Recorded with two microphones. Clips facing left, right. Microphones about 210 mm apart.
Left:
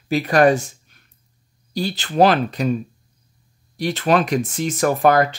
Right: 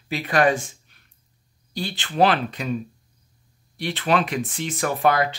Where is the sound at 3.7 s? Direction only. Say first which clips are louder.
Left 4 dB; 40° left (ahead or behind).